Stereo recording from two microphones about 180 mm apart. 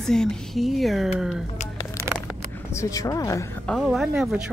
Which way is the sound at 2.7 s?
20° left (ahead or behind).